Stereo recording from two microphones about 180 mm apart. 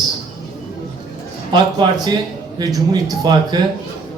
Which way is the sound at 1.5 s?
25° right (ahead or behind).